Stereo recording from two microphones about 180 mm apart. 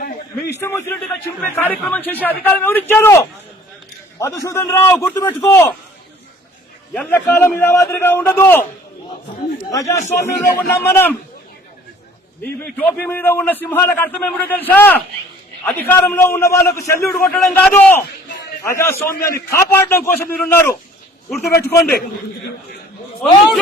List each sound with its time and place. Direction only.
0.0 s a sound: 60° left (ahead or behind)
0.6 s a man's voice: 15° left (ahead or behind)
6.9 s a man's voice: 10° left (ahead or behind)
9.7 s a man's voice: 15° left (ahead or behind)
12.4 s a man's voice: 10° left (ahead or behind)